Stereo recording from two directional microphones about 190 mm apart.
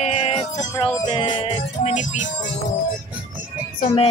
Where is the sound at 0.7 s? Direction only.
15° left (ahead or behind).